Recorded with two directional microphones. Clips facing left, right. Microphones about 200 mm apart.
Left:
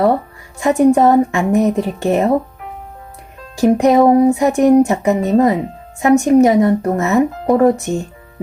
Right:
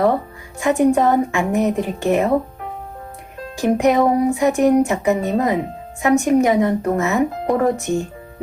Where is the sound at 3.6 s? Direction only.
35° left (ahead or behind).